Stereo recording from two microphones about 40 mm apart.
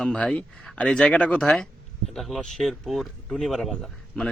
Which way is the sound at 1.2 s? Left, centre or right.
Left.